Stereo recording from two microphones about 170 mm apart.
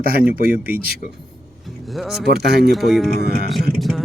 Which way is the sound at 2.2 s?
70° right (ahead or behind).